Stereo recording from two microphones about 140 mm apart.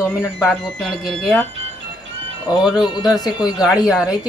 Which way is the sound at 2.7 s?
30° left (ahead or behind).